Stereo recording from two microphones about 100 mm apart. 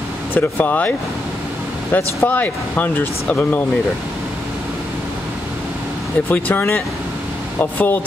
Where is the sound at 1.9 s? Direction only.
15° left (ahead or behind).